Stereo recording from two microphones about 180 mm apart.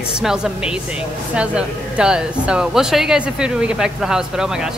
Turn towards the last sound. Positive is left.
turn(degrees=-5)  # may be behind; listen again after turning